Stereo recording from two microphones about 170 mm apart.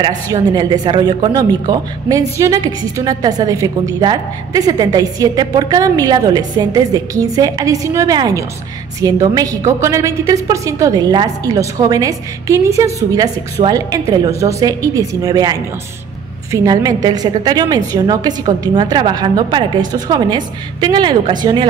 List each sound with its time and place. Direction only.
0.0 s speech: 25° right (ahead or behind)